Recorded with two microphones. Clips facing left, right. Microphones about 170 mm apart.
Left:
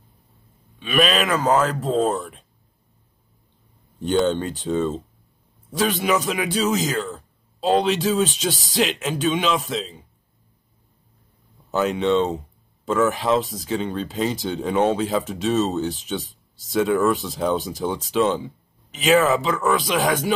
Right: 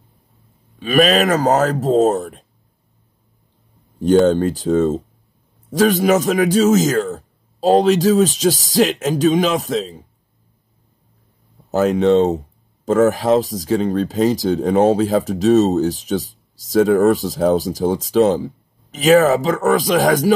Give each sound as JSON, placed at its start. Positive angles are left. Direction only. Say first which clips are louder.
{"t": 0.7, "sound": "speech", "louder": "right 6 dB", "side_deg": -40}
{"t": 4.3, "sound": "speech", "louder": "right 7 dB", "side_deg": -40}
{"t": 11.7, "sound": "speech", "louder": "right 6 dB", "side_deg": -40}